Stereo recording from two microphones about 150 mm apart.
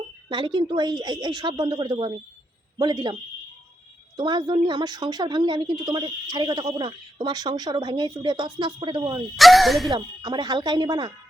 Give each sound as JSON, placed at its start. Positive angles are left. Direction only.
{"t": 0.3, "sound": "a woman's voice", "side_deg": -30}
{"t": 4.2, "sound": "a woman's voice", "side_deg": -30}
{"t": 9.3, "sound": "speech", "side_deg": 0}
{"t": 9.9, "sound": "a woman's voice", "side_deg": -30}